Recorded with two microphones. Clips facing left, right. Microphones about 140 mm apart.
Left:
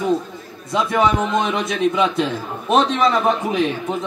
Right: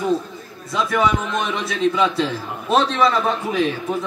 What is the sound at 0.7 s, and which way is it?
A man's voice, 25° left (ahead or behind).